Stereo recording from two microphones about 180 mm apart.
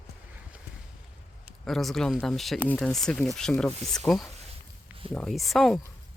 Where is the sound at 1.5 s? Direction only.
Centre (ahead or behind).